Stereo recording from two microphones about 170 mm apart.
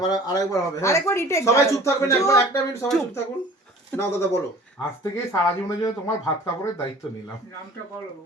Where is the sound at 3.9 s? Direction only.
10° left (ahead or behind).